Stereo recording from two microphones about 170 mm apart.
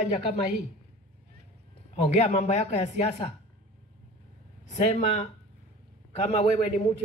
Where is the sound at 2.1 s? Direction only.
40° left (ahead or behind).